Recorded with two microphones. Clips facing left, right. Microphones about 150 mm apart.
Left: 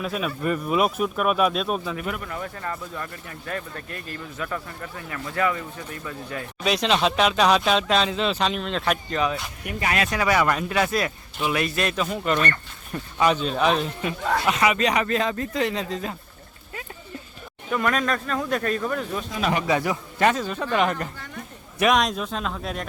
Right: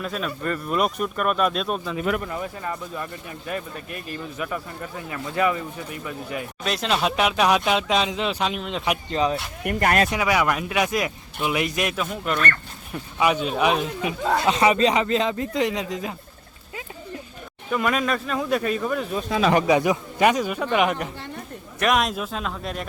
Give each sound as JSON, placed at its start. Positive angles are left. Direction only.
{"t": 0.0, "sound": "speech", "side_deg": 5}
{"t": 2.2, "sound": "speech", "side_deg": -15}
{"t": 6.6, "sound": "speech", "side_deg": 0}
{"t": 9.1, "sound": "speech", "side_deg": -30}
{"t": 9.6, "sound": "speech", "side_deg": -50}
{"t": 10.1, "sound": "speech", "side_deg": -10}
{"t": 11.9, "sound": "speech", "side_deg": 0}
{"t": 14.3, "sound": "speech", "side_deg": -25}
{"t": 17.7, "sound": "speech", "side_deg": -5}
{"t": 19.6, "sound": "speech", "side_deg": -20}